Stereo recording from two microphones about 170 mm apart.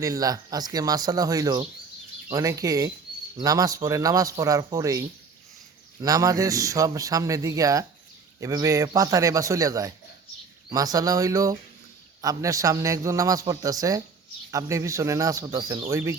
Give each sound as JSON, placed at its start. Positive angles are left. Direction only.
{"t": 0.0, "sound": "a man's voice", "side_deg": -20}